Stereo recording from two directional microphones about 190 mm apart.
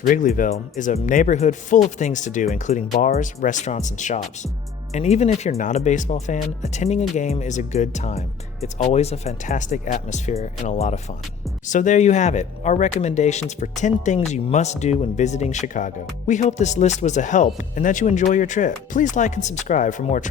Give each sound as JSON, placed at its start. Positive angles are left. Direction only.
{"t": 0.1, "sound": "speech", "side_deg": 45}